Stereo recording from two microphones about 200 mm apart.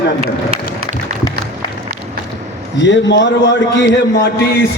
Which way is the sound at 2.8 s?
65° left (ahead or behind).